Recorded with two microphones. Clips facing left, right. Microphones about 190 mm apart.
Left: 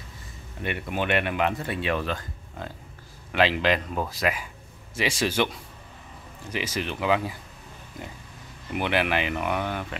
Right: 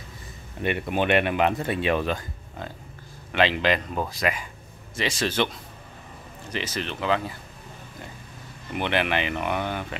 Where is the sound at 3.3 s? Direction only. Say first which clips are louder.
Even; 5° left (ahead or behind).